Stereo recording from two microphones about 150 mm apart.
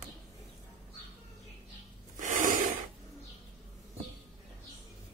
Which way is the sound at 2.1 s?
55° right (ahead or behind).